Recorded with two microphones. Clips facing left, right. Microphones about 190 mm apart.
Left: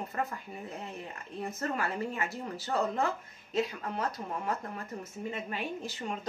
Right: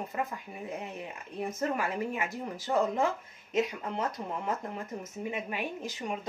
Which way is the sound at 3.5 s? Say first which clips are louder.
Right 2 dB; 20° right (ahead or behind).